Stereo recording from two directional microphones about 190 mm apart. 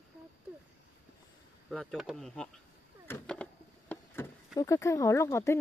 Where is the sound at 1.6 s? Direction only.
Centre (ahead or behind).